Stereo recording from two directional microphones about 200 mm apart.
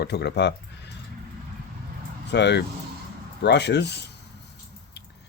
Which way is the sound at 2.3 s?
60° left (ahead or behind).